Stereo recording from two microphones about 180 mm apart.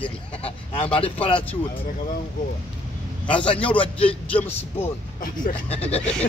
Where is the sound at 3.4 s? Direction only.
30° left (ahead or behind).